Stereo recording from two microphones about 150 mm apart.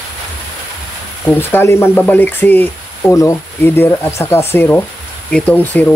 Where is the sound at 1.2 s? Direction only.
15° left (ahead or behind).